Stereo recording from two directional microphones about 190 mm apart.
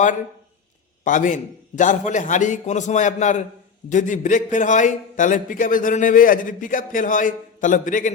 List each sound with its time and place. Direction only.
1.0 s a man's voice: 40° left (ahead or behind)